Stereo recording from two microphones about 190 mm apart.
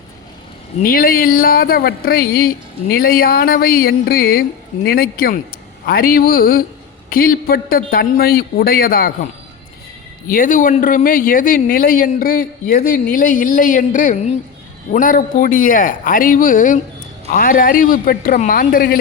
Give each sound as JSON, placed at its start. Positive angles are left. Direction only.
{"t": 0.8, "sound": "speech", "side_deg": 50}
{"t": 10.2, "sound": "speech", "side_deg": 45}